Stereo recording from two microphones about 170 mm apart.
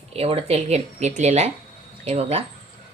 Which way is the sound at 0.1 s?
35° right (ahead or behind).